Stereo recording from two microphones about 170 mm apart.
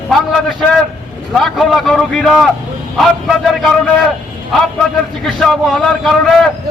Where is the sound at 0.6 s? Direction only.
Centre (ahead or behind).